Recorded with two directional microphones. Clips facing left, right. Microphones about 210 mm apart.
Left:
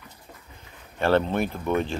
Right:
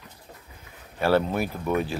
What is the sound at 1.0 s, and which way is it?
Speech, 5° right (ahead or behind).